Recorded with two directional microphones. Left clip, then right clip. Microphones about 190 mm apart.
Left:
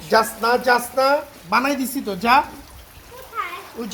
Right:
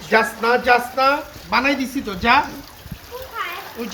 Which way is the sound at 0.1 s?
30° left (ahead or behind).